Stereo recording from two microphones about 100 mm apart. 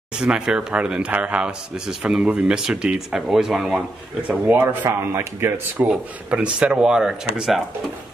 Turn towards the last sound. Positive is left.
turn(degrees=-5)  # may be behind; listen again after turning